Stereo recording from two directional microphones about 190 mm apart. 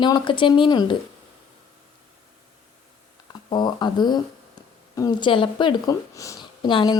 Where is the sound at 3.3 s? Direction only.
25° left (ahead or behind).